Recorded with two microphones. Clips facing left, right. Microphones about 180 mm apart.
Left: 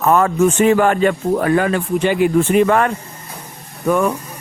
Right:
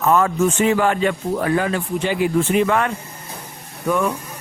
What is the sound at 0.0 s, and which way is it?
Speech, 50° left (ahead or behind).